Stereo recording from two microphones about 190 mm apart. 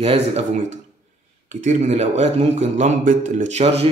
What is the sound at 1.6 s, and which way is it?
Speech, 35° right (ahead or behind).